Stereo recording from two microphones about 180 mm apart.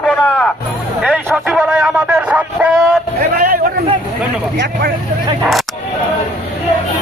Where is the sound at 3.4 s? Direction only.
50° right (ahead or behind).